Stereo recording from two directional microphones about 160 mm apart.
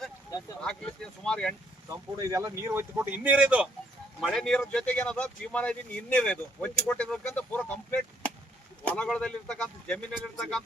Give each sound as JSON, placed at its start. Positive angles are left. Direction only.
{"t": 0.6, "sound": "speech", "side_deg": 5}
{"t": 1.9, "sound": "speech", "side_deg": -20}
{"t": 4.2, "sound": "speech", "side_deg": 0}
{"t": 9.0, "sound": "speech", "side_deg": 5}